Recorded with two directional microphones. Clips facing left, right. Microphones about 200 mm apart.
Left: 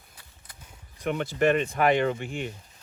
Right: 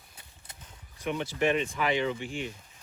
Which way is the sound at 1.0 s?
55° left (ahead or behind).